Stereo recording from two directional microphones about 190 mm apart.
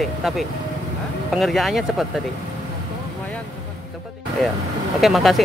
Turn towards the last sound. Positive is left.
turn(degrees=0)  # may be behind; listen again after turning